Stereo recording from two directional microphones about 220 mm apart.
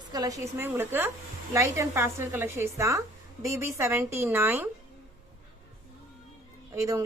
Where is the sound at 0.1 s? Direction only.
15° right (ahead or behind).